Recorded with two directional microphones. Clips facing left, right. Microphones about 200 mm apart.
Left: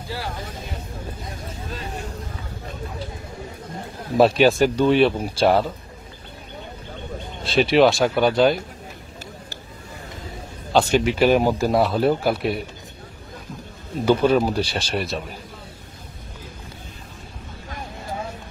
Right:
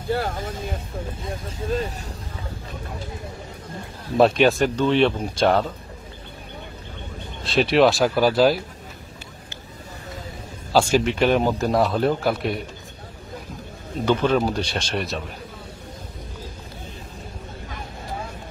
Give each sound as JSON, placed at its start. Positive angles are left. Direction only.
{"t": 0.1, "sound": "speech", "side_deg": -50}
{"t": 4.2, "sound": "speech", "side_deg": 0}
{"t": 7.4, "sound": "speech", "side_deg": 0}
{"t": 10.7, "sound": "speech", "side_deg": 0}
{"t": 14.0, "sound": "speech", "side_deg": 10}